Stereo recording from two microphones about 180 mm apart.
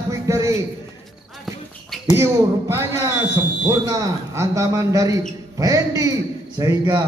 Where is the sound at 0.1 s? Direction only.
15° right (ahead or behind).